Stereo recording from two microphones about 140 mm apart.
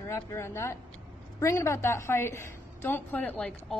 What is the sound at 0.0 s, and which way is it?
A woman's voice, 20° left (ahead or behind).